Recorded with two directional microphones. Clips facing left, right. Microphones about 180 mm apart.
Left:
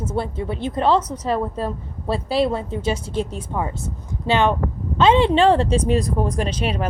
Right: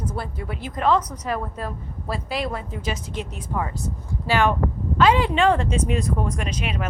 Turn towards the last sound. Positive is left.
turn(degrees=30)  # may be behind; listen again after turning